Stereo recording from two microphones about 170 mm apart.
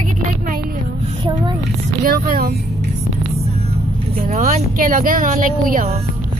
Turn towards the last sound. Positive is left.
turn(degrees=-50)  # may be behind; listen again after turning